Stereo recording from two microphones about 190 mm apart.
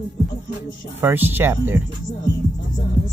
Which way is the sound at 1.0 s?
10° right (ahead or behind).